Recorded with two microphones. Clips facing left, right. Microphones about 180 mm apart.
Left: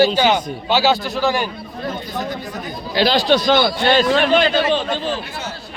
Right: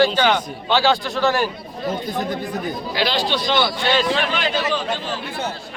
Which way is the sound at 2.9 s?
40° left (ahead or behind).